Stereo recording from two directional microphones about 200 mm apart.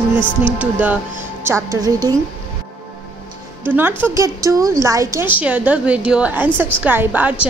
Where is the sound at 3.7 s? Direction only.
10° right (ahead or behind).